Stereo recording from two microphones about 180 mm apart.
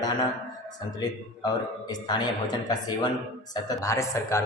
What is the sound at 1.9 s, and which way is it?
Speech, 20° left (ahead or behind).